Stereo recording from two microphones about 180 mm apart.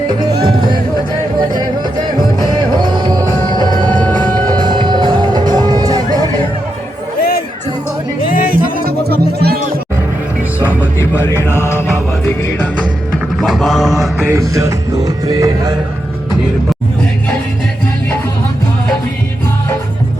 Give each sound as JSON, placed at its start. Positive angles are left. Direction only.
{"t": 0.4, "sound": "music", "side_deg": -25}
{"t": 2.8, "sound": "music", "side_deg": -25}
{"t": 7.2, "sound": "music", "side_deg": 55}
{"t": 8.8, "sound": "music", "side_deg": -60}
{"t": 12.2, "sound": "music", "side_deg": 10}
{"t": 13.4, "sound": "mantra", "side_deg": 0}
{"t": 14.3, "sound": "music", "side_deg": -15}